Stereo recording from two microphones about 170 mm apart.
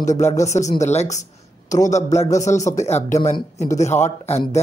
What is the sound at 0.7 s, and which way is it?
Speech, 40° left (ahead or behind).